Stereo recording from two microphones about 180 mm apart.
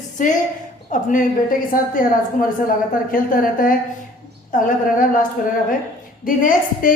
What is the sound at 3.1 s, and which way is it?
Speech, 50° left (ahead or behind).